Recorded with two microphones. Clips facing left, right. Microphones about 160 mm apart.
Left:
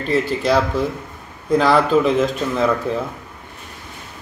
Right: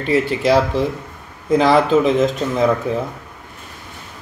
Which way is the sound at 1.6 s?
20° right (ahead or behind).